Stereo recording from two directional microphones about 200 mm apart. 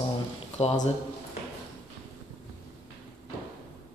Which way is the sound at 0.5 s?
35° left (ahead or behind).